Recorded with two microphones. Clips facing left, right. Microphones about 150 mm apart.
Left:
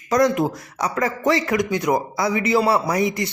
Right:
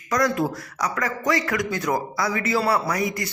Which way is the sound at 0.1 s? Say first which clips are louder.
Left 4 dB; 20° left (ahead or behind).